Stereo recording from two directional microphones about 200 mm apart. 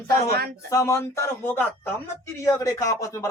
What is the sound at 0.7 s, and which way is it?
Speech, 15° left (ahead or behind).